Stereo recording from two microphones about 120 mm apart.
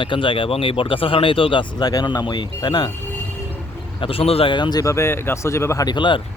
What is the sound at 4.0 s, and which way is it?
Speech, 50° left (ahead or behind).